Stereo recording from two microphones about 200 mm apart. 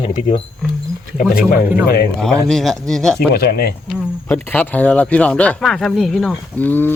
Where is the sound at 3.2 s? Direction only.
50° left (ahead or behind).